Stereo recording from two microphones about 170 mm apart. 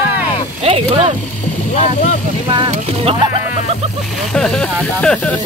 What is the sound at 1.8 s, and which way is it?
Speech, 45° left (ahead or behind).